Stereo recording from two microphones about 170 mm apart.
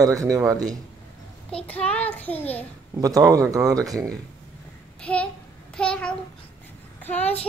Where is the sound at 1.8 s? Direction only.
5° left (ahead or behind).